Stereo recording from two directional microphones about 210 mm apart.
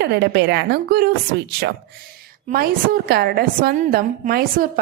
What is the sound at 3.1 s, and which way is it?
A woman's voice, 50° right (ahead or behind).